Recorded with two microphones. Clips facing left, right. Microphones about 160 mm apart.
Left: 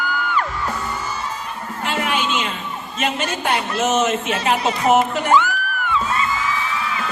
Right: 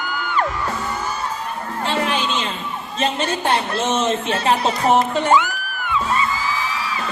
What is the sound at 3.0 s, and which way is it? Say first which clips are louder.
Speech: right 2 dB; 30° right (ahead or behind).